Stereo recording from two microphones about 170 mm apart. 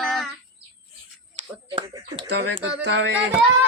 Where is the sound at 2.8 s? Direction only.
85° right.